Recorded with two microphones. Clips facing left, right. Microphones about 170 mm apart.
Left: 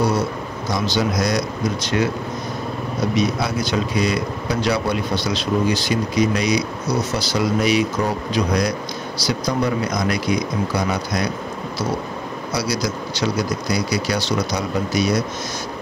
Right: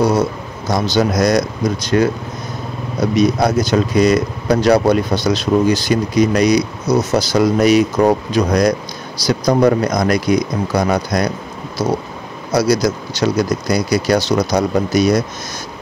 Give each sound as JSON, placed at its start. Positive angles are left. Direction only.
{"t": 0.7, "sound": "speech", "side_deg": -45}
{"t": 3.2, "sound": "speech", "side_deg": -40}
{"t": 12.5, "sound": "speech", "side_deg": -45}